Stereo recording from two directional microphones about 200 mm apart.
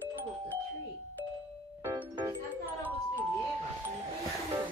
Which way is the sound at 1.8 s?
20° right (ahead or behind).